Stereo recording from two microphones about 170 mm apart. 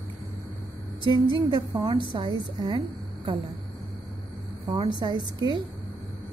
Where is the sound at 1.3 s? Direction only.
25° right (ahead or behind).